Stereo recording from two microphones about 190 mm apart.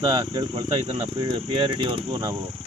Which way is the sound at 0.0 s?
25° right (ahead or behind).